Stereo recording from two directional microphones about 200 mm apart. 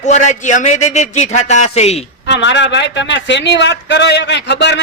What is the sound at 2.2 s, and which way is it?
Speech, 60° left (ahead or behind).